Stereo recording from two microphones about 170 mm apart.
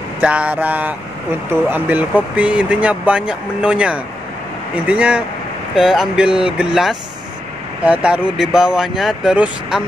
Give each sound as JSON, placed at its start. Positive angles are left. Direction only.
{"t": 0.2, "sound": "speech", "side_deg": -5}